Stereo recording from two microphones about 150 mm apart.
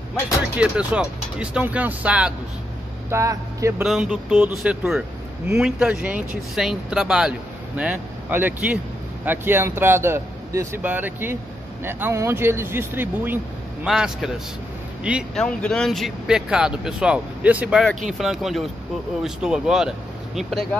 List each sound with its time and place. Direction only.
0.1 s speech: 5° right (ahead or behind)
3.1 s speech: 20° right (ahead or behind)
3.8 s speech: 5° right (ahead or behind)
15.3 s speech: 5° left (ahead or behind)